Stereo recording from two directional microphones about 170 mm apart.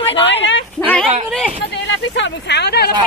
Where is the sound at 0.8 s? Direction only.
5° left (ahead or behind).